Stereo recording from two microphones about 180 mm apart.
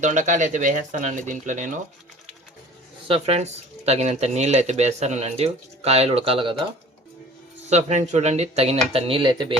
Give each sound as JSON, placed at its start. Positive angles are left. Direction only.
{"t": 0.0, "sound": "speech", "side_deg": -45}
{"t": 3.1, "sound": "speech", "side_deg": -35}
{"t": 7.7, "sound": "speech", "side_deg": -40}